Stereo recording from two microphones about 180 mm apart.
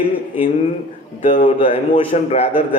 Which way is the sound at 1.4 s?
30° left (ahead or behind).